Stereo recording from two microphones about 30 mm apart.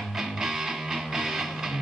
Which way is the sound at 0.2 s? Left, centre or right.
Centre.